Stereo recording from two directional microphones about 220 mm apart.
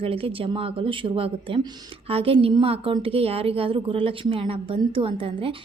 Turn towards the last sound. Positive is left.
turn(degrees=-25)  # may be behind; listen again after turning